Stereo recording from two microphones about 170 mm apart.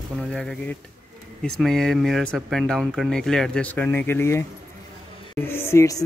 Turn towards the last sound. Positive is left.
turn(degrees=20)  # may be behind; listen again after turning